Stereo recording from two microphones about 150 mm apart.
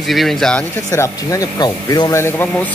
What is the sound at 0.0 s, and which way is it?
Speech, centre (ahead or behind).